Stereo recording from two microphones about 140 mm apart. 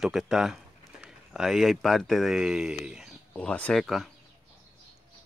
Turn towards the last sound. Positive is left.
turn(degrees=0)  # may be behind; listen again after turning